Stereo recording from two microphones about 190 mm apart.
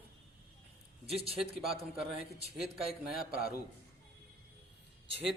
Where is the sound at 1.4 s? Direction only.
Centre (ahead or behind).